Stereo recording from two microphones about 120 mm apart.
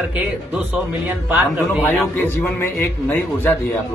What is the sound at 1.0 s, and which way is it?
Speech, 15° right (ahead or behind).